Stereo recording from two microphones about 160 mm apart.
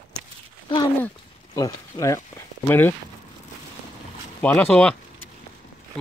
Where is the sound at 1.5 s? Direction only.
20° left (ahead or behind).